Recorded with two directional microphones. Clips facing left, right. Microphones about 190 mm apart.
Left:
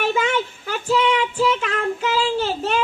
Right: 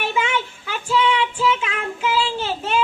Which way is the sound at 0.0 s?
40° left (ahead or behind).